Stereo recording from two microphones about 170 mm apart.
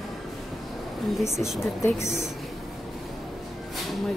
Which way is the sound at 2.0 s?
45° right (ahead or behind).